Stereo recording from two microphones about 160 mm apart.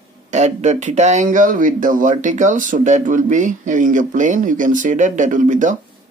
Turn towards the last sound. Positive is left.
turn(degrees=-50)  # may be behind; listen again after turning